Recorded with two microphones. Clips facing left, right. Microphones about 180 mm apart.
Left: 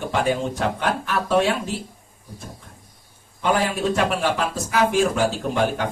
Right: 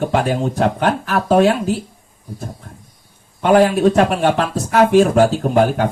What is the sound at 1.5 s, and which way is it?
Speech, centre (ahead or behind).